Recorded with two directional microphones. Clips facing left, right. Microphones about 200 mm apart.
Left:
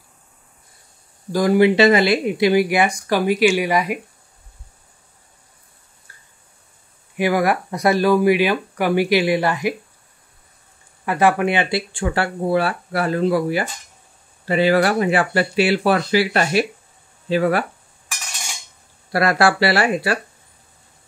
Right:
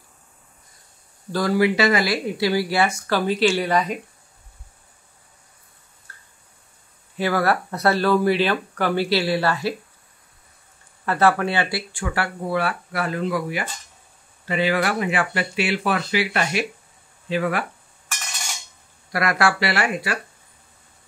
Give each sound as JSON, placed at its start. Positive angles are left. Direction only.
{"t": 1.3, "sound": "speech", "side_deg": 20}
{"t": 6.1, "sound": "drip", "side_deg": 10}
{"t": 7.2, "sound": "speech", "side_deg": 15}
{"t": 11.1, "sound": "speech", "side_deg": 15}
{"t": 19.1, "sound": "speech", "side_deg": 30}